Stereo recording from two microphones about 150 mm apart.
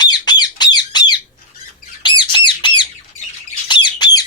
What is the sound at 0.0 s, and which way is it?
Squawk, 30° left (ahead or behind).